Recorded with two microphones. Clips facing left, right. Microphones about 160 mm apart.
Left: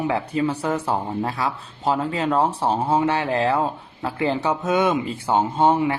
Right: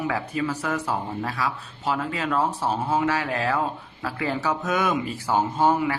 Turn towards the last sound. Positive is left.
turn(degrees=25)  # may be behind; listen again after turning